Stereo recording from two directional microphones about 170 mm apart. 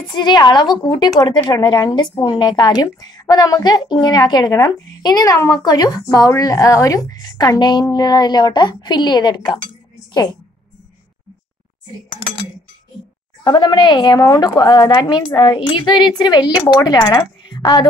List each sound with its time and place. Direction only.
0.1 s speech: 25° left (ahead or behind)
13.4 s a woman's voice: 25° left (ahead or behind)